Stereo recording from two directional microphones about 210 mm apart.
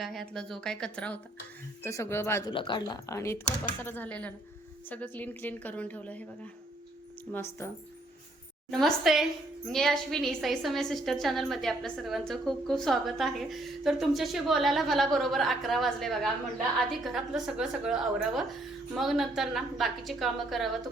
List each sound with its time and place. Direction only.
0.0 s a woman's voice: centre (ahead or behind)
2.5 s speech: 25° left (ahead or behind)
8.7 s a woman's voice: centre (ahead or behind)